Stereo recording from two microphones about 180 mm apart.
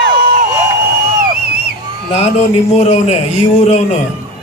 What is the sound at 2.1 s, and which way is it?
Speech, 35° left (ahead or behind).